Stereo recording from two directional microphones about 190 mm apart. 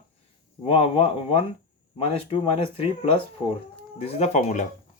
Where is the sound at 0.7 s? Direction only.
30° left (ahead or behind).